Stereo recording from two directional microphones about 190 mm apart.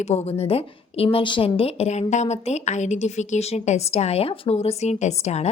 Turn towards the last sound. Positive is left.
turn(degrees=35)  # may be behind; listen again after turning